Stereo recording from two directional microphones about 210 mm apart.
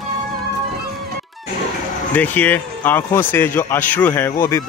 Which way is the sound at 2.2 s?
10° left (ahead or behind).